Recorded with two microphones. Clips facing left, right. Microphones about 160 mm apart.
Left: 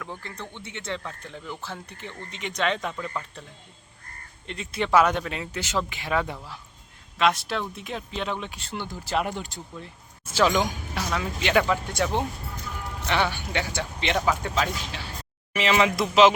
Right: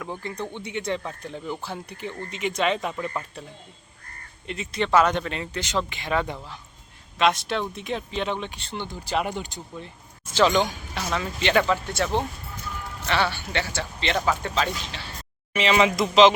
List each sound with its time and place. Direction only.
0.0 s speech: 15° right (ahead or behind)
4.4 s speech: 5° right (ahead or behind)
4.7 s speech: 10° left (ahead or behind)
14.2 s speech: centre (ahead or behind)